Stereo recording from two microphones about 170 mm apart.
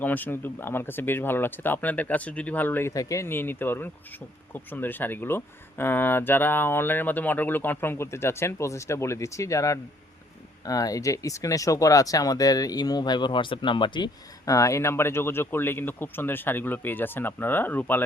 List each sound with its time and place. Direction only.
0.0 s speech: 10° left (ahead or behind)